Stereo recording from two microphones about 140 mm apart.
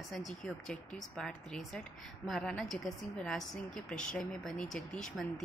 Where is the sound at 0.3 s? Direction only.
Centre (ahead or behind).